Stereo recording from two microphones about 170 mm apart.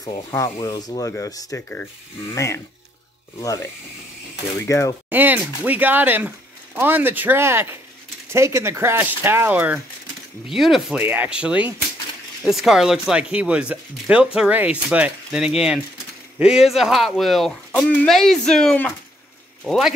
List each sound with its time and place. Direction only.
0.0 s speech: 20° left (ahead or behind)
5.1 s speech: 10° right (ahead or behind)